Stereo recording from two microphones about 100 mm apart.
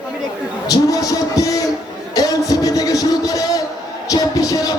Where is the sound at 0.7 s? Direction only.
35° left (ahead or behind).